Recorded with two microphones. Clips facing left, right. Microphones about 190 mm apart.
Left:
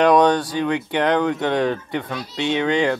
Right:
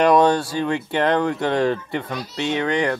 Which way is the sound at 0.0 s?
Centre (ahead or behind).